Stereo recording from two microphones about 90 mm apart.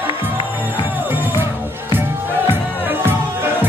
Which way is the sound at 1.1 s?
25° right (ahead or behind).